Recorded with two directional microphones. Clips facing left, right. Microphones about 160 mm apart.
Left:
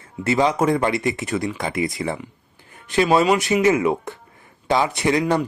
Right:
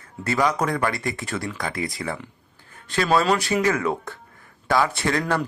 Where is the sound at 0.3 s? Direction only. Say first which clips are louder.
Left 4 dB; 25° left (ahead or behind).